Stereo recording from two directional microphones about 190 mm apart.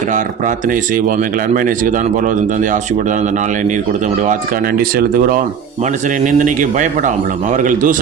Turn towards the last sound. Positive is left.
turn(degrees=-45)  # may be behind; listen again after turning